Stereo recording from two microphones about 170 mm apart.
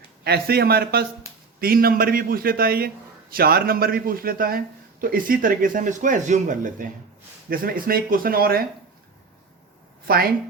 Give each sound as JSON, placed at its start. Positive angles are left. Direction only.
{"t": 0.3, "sound": "a man's voice", "side_deg": -65}